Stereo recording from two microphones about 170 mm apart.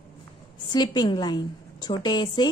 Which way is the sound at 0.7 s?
25° left (ahead or behind).